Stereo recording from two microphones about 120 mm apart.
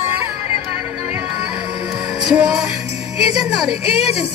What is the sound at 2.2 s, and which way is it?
Music, 5° right (ahead or behind).